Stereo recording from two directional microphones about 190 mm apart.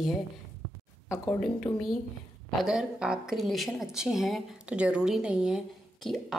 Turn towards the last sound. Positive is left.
turn(degrees=0)  # may be behind; listen again after turning